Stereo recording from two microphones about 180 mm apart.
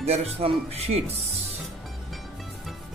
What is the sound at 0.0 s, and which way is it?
Speech, 35° right (ahead or behind).